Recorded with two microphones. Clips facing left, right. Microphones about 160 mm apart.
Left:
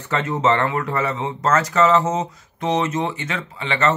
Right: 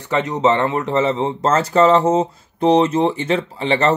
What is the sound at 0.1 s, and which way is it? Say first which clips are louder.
Speech: right 3 dB; 20° right (ahead or behind).